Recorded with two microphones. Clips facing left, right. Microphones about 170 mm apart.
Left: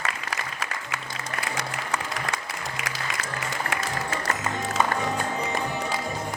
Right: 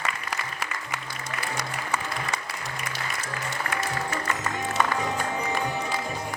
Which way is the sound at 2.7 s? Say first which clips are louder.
Left 1 dB; 90° left.